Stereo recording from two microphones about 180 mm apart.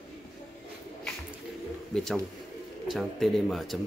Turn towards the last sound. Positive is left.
turn(degrees=0)  # may be behind; listen again after turning